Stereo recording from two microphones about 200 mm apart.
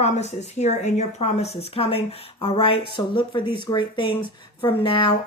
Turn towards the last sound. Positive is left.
turn(degrees=25)  # may be behind; listen again after turning